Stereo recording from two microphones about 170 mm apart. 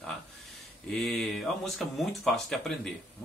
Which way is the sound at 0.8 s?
Centre (ahead or behind).